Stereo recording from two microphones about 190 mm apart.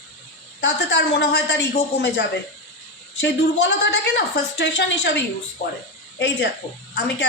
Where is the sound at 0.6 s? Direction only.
65° left (ahead or behind).